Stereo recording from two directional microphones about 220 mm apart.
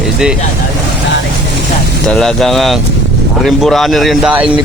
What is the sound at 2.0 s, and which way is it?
Speech, centre (ahead or behind).